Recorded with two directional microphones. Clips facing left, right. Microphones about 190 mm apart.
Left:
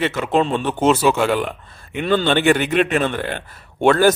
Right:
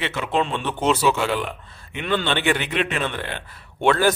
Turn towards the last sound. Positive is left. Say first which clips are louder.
# left 5 dB
turn(degrees=45)  # may be behind; listen again after turning